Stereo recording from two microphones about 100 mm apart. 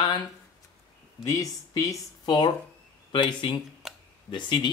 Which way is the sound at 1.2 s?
35° left (ahead or behind).